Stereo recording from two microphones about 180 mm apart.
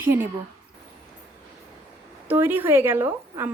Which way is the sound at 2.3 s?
10° right (ahead or behind).